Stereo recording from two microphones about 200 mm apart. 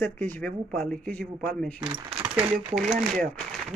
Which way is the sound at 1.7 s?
25° right (ahead or behind).